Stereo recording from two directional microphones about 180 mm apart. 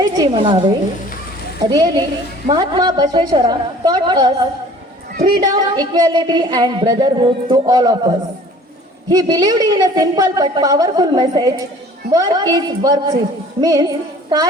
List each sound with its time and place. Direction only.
0.0 s a woman's voice: 25° right (ahead or behind)
1.7 s a woman's voice: 20° right (ahead or behind)